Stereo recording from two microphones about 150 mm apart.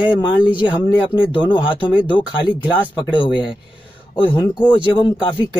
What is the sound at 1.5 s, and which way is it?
Speech, 35° left (ahead or behind).